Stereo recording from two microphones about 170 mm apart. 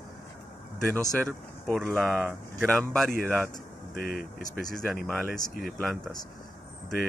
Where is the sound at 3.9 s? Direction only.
60° left (ahead or behind).